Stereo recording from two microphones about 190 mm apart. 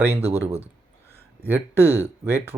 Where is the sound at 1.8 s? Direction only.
10° right (ahead or behind).